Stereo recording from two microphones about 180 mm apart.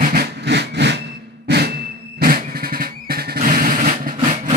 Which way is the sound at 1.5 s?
70° right (ahead or behind).